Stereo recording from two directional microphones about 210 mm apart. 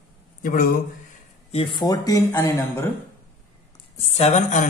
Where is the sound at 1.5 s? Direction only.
25° left (ahead or behind).